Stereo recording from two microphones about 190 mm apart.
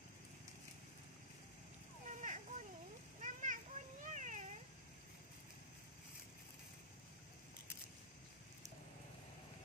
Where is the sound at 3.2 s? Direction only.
40° right (ahead or behind).